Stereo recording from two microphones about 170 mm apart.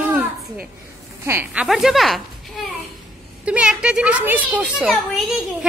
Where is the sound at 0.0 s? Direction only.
10° right (ahead or behind).